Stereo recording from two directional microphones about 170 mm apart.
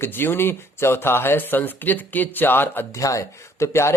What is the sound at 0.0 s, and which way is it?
Speech, 10° left (ahead or behind).